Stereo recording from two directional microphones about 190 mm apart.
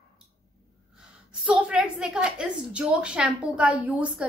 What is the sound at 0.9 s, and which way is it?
A woman's voice, 5° right (ahead or behind).